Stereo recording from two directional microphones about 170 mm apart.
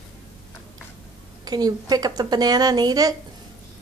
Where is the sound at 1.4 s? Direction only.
25° right (ahead or behind).